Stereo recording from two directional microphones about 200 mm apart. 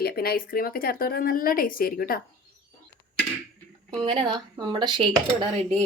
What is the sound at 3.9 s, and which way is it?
Speech, 25° right (ahead or behind).